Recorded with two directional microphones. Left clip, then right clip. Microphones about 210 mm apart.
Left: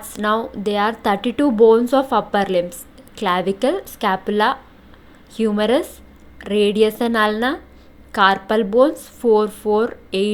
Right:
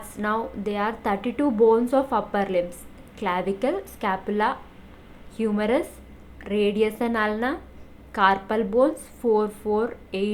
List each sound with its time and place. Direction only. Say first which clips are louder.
0.0 s a woman's voice: left 6 dB; 25° left (ahead or behind)